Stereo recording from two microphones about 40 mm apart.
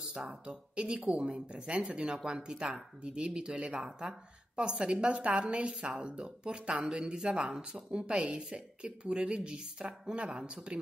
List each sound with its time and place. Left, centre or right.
0.3 s a woman's voice: right